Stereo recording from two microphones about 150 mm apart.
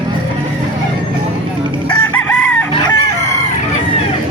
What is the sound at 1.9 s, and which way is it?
Chicken, 10° left (ahead or behind).